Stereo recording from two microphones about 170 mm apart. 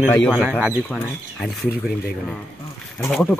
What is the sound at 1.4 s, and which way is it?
Speech, centre (ahead or behind).